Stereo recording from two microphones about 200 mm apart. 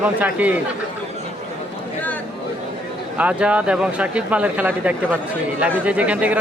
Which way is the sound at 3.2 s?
5° right (ahead or behind).